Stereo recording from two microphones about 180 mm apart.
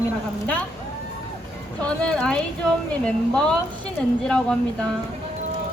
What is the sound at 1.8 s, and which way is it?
Speech, 5° left (ahead or behind).